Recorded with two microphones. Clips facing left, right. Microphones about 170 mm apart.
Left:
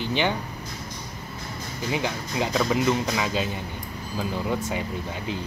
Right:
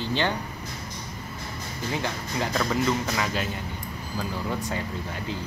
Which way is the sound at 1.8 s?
15° left (ahead or behind).